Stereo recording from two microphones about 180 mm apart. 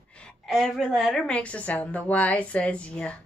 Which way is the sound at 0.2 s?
Centre (ahead or behind).